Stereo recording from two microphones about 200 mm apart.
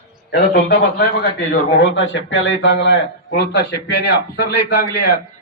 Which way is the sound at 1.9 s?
65° left (ahead or behind).